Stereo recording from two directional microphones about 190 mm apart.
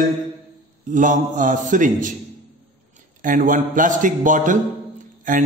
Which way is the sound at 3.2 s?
45° right (ahead or behind).